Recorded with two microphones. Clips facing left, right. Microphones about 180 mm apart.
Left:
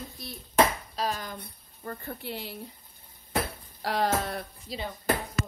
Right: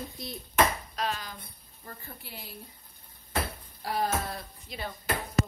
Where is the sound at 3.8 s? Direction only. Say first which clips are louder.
Left 3 dB; 80° left.